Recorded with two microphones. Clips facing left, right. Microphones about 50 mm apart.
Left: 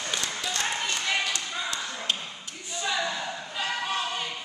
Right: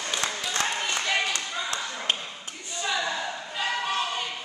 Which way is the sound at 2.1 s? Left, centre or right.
Right.